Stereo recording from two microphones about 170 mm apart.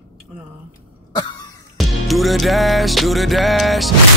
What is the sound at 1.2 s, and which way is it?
Cough, 25° left (ahead or behind).